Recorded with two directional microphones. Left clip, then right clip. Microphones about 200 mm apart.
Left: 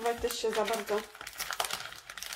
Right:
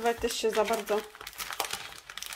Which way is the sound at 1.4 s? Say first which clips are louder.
Even; 20° right (ahead or behind).